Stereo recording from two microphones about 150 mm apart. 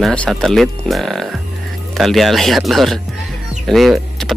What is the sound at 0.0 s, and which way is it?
Speech, 5° left (ahead or behind).